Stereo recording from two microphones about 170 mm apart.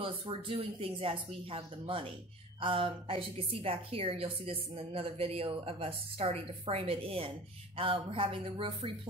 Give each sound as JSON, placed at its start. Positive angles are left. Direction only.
{"t": 0.0, "sound": "a woman's voice", "side_deg": -30}